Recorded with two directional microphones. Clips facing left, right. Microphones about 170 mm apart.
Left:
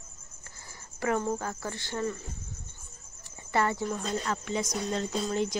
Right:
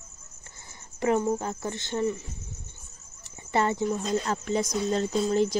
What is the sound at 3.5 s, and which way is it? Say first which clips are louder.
Speech: right 3 dB; 20° right (ahead or behind).